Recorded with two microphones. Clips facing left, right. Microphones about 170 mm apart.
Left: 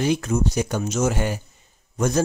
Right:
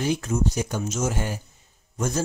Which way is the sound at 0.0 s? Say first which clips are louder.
Left 3 dB; 75° left (ahead or behind).